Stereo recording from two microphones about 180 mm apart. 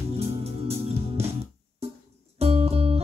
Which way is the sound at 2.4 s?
35° right (ahead or behind).